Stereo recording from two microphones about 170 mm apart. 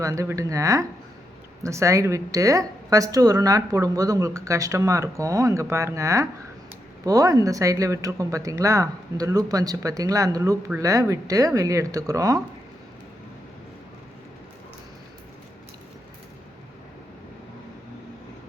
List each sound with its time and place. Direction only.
0.0 s a woman's voice: 20° right (ahead or behind)